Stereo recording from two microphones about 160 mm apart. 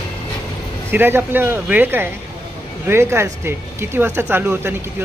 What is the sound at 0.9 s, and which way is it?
Speech, 15° right (ahead or behind).